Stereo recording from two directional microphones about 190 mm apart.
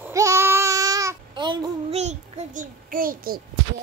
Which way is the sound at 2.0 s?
35° right (ahead or behind).